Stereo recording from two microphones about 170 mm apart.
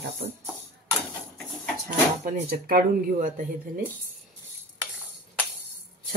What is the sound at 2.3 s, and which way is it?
Speech, 50° right (ahead or behind).